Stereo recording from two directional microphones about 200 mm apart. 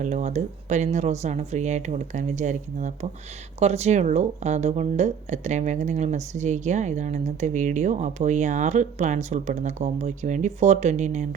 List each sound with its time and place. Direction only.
0.0 s speech: 35° right (ahead or behind)